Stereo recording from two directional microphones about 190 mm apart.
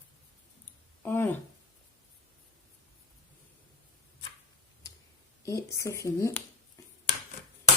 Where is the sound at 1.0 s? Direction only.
10° left (ahead or behind).